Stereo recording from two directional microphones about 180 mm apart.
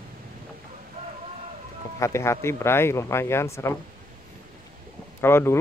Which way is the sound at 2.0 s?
15° left (ahead or behind).